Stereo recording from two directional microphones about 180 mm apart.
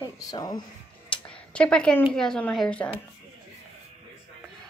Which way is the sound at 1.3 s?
5° left (ahead or behind).